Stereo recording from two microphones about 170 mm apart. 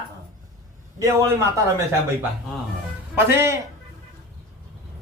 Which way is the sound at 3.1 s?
15° right (ahead or behind).